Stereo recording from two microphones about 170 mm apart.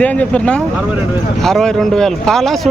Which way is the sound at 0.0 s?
10° left (ahead or behind).